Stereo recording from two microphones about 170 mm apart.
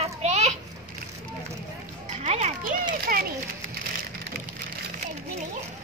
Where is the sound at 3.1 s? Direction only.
55° right (ahead or behind).